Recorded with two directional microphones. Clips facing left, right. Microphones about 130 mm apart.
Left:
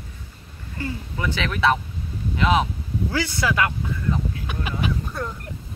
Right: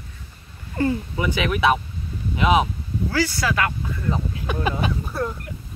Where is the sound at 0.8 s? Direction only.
50° right (ahead or behind).